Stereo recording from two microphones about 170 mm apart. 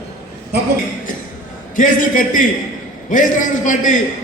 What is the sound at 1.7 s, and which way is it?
A man's voice, 50° left (ahead or behind).